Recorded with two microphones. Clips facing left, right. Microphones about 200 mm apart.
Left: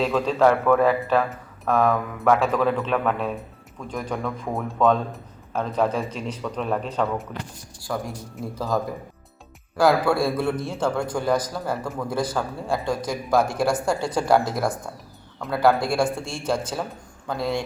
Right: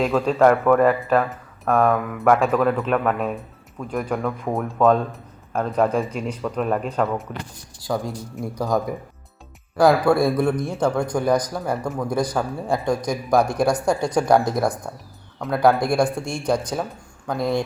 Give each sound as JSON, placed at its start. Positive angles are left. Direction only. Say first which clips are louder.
{"t": 0.1, "sound": "a man's voice", "louder": "right 2 dB", "side_deg": -5}
{"t": 7.8, "sound": "speech", "louder": "right 4 dB", "side_deg": -20}
{"t": 9.8, "sound": "speech", "louder": "right 3 dB", "side_deg": -20}
{"t": 15.4, "sound": "speech", "louder": "right 3 dB", "side_deg": 0}
{"t": 15.8, "sound": "speech", "louder": "right 3 dB", "side_deg": -15}